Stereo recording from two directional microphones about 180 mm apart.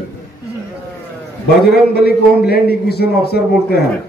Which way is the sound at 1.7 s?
60° left (ahead or behind).